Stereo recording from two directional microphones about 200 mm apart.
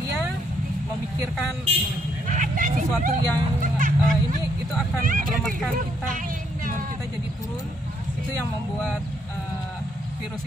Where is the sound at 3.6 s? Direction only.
40° right (ahead or behind).